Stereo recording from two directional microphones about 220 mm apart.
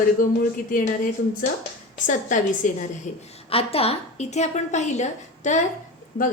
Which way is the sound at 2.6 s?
35° left (ahead or behind).